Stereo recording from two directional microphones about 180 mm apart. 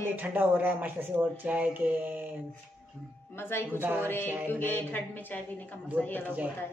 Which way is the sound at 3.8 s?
10° right (ahead or behind).